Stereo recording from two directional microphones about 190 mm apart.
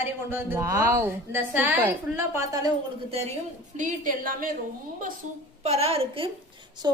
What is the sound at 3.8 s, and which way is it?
Speech, 45° right (ahead or behind).